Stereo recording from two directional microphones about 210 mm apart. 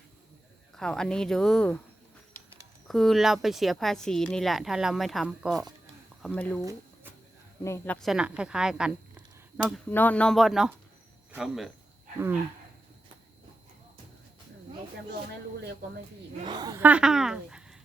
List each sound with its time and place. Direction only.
0.8 s speech: 5° left (ahead or behind)
2.8 s speech: centre (ahead or behind)
7.6 s speech: 15° left (ahead or behind)
8.0 s speech: 5° right (ahead or behind)
16.5 s a woman's voice: 20° right (ahead or behind)
16.8 s speech: 5° right (ahead or behind)